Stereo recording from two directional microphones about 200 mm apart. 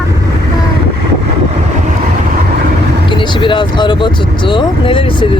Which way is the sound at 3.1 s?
25° left (ahead or behind).